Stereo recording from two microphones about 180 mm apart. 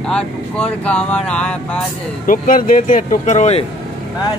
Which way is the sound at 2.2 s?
50° left (ahead or behind).